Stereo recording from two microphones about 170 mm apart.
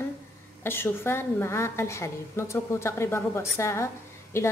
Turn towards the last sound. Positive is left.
turn(degrees=15)  # may be behind; listen again after turning